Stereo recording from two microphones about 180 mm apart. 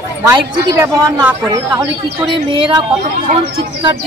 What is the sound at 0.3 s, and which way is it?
A man's voice, 15° right (ahead or behind).